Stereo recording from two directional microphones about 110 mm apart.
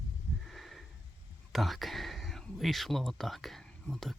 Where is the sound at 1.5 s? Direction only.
Centre (ahead or behind).